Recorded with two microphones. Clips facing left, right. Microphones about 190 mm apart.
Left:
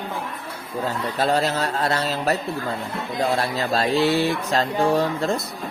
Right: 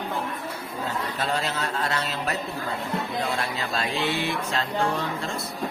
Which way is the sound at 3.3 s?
40° left (ahead or behind).